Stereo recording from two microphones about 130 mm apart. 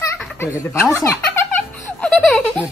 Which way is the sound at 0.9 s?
20° left (ahead or behind).